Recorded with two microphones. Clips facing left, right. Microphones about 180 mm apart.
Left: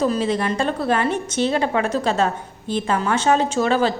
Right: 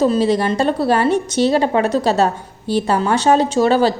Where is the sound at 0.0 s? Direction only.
35° right (ahead or behind).